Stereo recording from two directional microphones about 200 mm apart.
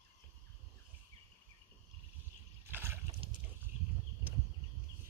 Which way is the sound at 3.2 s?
30° right (ahead or behind).